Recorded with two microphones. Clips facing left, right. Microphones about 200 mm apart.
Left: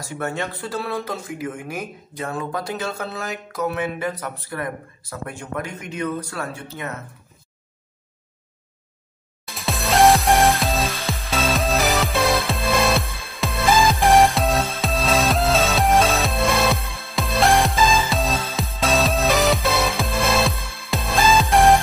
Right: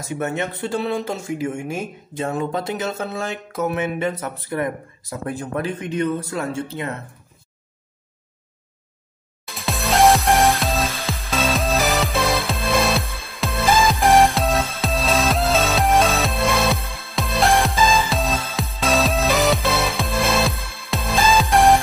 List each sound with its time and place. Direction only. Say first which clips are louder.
0.0 s speech: right 3 dB; 20° right (ahead or behind)
5.3 s speech: right 6 dB; 35° right (ahead or behind)
9.5 s music: even; centre (ahead or behind)